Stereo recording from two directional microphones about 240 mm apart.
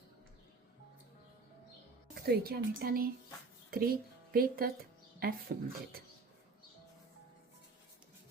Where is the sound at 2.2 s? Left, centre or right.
Right.